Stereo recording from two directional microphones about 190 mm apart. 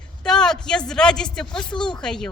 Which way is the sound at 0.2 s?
5° left (ahead or behind).